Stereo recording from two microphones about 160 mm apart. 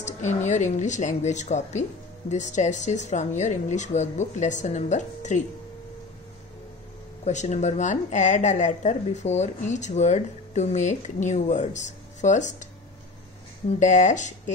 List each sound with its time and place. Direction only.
0.0 s a woman's voice: 50° left (ahead or behind)
7.2 s a woman's voice: 45° left (ahead or behind)
13.7 s a woman's voice: 50° left (ahead or behind)